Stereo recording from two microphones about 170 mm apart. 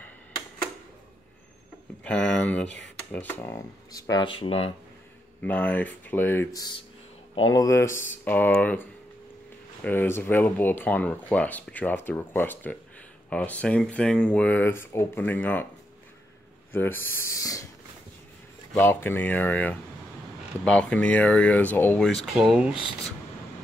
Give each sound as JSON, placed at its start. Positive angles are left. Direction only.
{"t": 2.0, "sound": "speech", "side_deg": 5}
{"t": 5.4, "sound": "speech", "side_deg": 10}
{"t": 9.8, "sound": "speech", "side_deg": 15}
{"t": 16.7, "sound": "speech", "side_deg": 10}
{"t": 18.8, "sound": "speech", "side_deg": 15}